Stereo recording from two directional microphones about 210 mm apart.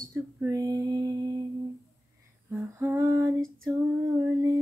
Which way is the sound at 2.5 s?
10° right (ahead or behind).